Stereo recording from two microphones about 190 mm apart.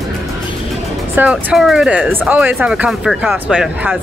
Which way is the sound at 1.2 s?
5° right (ahead or behind).